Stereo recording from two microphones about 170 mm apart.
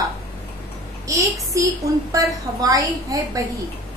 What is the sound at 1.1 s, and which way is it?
A woman's voice, 20° right (ahead or behind).